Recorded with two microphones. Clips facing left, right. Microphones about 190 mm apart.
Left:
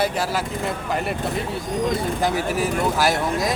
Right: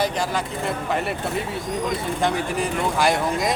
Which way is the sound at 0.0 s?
5° left (ahead or behind).